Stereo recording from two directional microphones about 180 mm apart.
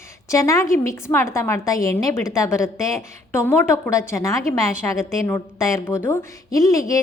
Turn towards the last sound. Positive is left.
turn(degrees=20)  # may be behind; listen again after turning